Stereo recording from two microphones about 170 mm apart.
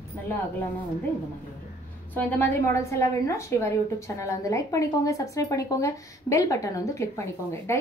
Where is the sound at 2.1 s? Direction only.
10° left (ahead or behind).